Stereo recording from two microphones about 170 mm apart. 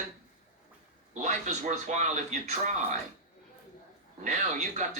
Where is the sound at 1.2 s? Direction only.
45° right (ahead or behind).